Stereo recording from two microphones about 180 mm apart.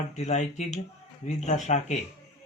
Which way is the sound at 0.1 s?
40° left (ahead or behind).